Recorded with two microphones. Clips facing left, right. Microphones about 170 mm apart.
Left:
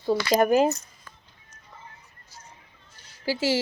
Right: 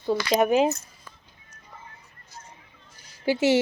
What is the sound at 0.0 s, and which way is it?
Speech, 5° left (ahead or behind).